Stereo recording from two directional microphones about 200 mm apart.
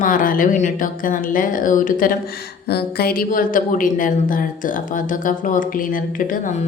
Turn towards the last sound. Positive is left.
turn(degrees=45)  # may be behind; listen again after turning